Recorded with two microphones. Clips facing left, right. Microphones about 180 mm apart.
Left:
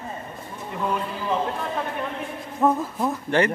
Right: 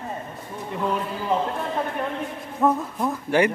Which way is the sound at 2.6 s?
Centre (ahead or behind).